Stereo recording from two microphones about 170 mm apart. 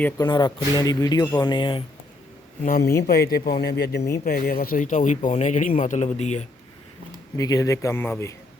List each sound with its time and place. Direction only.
0.2 s speech: 25° left (ahead or behind)
2.6 s speech: 60° left (ahead or behind)
4.2 s speech: 60° left (ahead or behind); by 6.4 s 45° left (ahead or behind)
7.3 s a man's voice: 20° left (ahead or behind)